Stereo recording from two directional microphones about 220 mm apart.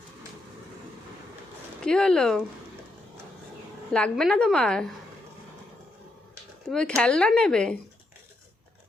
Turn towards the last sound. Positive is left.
turn(degrees=5)  # may be behind; listen again after turning